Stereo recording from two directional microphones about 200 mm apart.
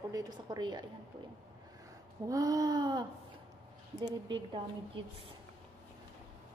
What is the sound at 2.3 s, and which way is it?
A woman's voice, 15° right (ahead or behind).